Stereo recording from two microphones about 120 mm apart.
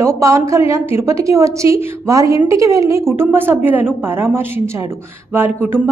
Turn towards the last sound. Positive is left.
turn(degrees=-15)  # may be behind; listen again after turning